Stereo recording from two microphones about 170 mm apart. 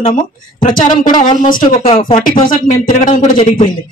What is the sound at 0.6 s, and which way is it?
Speech, 50° left (ahead or behind).